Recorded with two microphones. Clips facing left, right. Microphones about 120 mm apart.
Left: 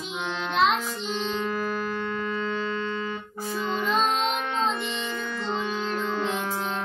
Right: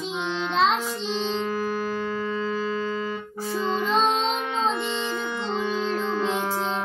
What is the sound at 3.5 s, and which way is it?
Music, 30° right (ahead or behind).